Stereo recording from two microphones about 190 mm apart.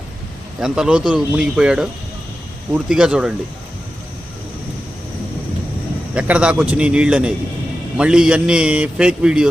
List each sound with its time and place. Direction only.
0.6 s a man's voice: 5° right (ahead or behind)
6.1 s a man's voice: 5° right (ahead or behind)